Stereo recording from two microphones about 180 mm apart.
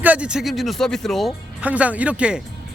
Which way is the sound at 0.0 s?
5° right (ahead or behind).